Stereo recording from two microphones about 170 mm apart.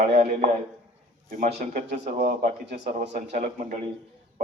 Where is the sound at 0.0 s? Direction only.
40° right (ahead or behind).